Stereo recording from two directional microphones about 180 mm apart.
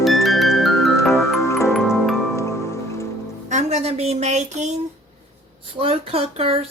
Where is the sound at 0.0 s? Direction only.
Centre (ahead or behind).